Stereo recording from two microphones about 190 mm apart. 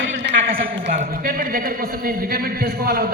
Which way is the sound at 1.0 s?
45° right (ahead or behind).